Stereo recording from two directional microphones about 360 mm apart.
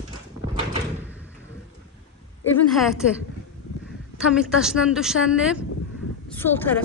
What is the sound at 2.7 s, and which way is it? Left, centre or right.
Speech, centre.